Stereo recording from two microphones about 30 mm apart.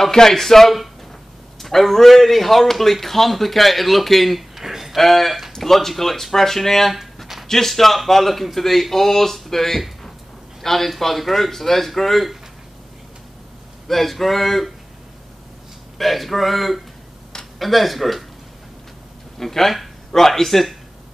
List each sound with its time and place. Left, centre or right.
0.1 s a man's voice: centre
4.6 s a sound: centre
4.9 s a man's voice: centre
13.8 s a man's voice: centre
16.0 s a man's voice: centre
19.3 s speech: centre